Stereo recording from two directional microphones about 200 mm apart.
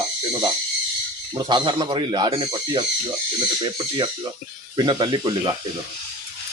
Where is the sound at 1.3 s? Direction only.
20° right (ahead or behind).